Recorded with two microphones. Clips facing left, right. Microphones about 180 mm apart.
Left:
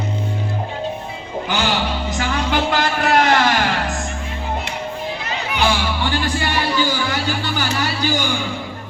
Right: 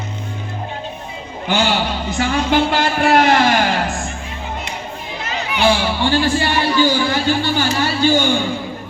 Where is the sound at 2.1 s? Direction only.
25° right (ahead or behind).